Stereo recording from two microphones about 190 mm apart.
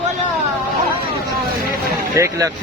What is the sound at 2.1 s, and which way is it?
Speech, 15° right (ahead or behind).